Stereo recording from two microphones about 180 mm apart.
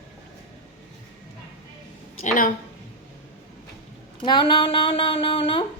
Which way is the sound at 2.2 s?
45° left (ahead or behind).